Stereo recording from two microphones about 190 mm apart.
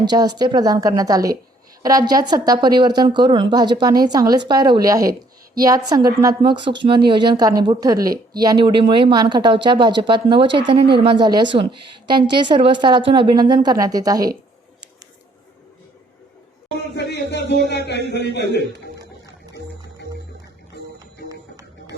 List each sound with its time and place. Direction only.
0.0 s a woman's voice: 20° right (ahead or behind)
16.9 s a sound: 60° left (ahead or behind)
17.7 s speech: 65° left (ahead or behind)
21.2 s music: 20° right (ahead or behind)